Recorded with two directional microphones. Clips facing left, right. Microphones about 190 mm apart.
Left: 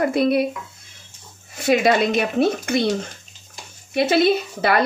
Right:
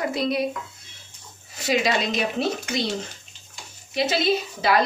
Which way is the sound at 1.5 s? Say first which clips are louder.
Left 6 dB; 55° left (ahead or behind).